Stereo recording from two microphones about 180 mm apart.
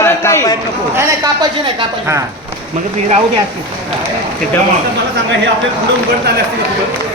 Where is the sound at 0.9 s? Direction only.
20° right (ahead or behind).